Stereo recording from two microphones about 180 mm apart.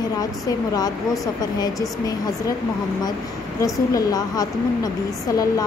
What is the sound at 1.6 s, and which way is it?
Speech, 20° left (ahead or behind).